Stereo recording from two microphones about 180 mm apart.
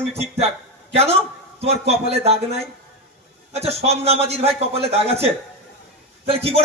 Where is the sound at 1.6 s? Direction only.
35° right (ahead or behind).